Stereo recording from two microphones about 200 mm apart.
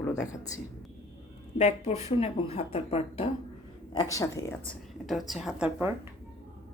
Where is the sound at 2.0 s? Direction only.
30° left (ahead or behind).